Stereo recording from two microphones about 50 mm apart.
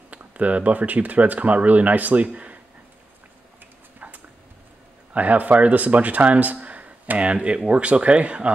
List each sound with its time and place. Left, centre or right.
0.1 s speech: right
4.0 s a sound: right
5.1 s speech: right